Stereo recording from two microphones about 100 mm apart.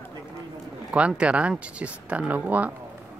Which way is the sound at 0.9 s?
10° right (ahead or behind).